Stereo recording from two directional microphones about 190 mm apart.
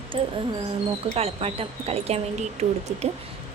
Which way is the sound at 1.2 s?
30° right (ahead or behind).